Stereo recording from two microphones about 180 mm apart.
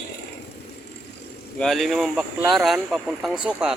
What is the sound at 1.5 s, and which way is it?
Speech, centre (ahead or behind).